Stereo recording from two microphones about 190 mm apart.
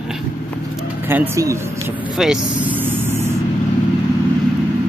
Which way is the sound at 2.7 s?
10° right (ahead or behind).